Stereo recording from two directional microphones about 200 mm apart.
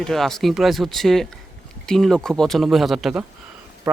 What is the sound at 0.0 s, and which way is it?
Speech, centre (ahead or behind).